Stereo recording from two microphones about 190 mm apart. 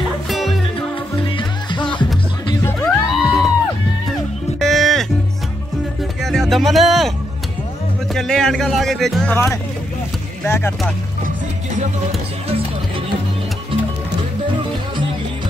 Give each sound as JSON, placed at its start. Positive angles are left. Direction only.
{"t": 0.3, "sound": "music", "side_deg": 0}
{"t": 0.7, "sound": "music", "side_deg": 25}
{"t": 2.6, "sound": "music", "side_deg": 5}
{"t": 4.6, "sound": "music", "side_deg": 0}
{"t": 6.2, "sound": "a sound", "side_deg": 0}
{"t": 8.1, "sound": "speech", "side_deg": 0}
{"t": 11.2, "sound": "music", "side_deg": -40}